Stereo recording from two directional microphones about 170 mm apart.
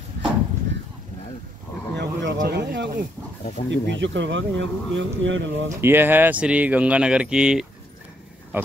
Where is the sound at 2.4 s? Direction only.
90° right.